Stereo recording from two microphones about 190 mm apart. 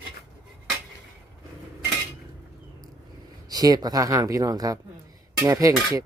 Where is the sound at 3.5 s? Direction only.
20° right (ahead or behind).